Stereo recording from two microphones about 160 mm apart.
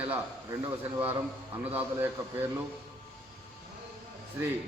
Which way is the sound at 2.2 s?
20° right (ahead or behind).